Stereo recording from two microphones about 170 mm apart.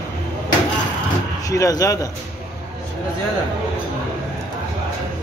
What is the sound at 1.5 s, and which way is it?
Speech, 20° left (ahead or behind).